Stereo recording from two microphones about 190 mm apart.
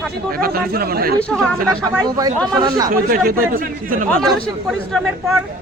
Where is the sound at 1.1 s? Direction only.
5° left (ahead or behind).